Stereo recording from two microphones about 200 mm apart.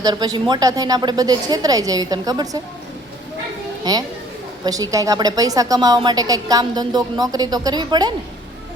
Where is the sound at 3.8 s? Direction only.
20° right (ahead or behind).